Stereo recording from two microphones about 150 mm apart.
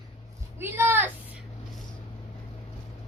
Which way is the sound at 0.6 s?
15° right (ahead or behind).